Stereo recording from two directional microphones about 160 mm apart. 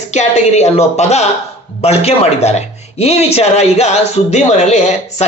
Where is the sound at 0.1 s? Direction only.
45° left (ahead or behind).